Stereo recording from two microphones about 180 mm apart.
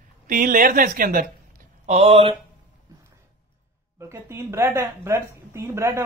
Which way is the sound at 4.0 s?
15° right (ahead or behind).